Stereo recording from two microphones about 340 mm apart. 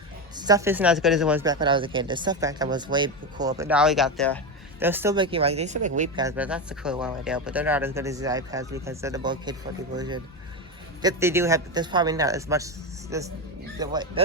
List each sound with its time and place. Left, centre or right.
0.3 s speech: centre
3.6 s speech: centre; by 6.2 s right
6.2 s speech: centre